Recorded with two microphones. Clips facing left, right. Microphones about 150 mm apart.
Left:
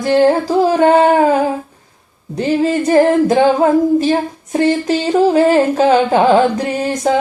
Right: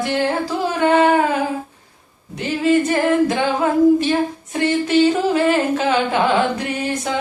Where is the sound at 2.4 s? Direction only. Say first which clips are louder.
Left 2 dB; 40° left (ahead or behind).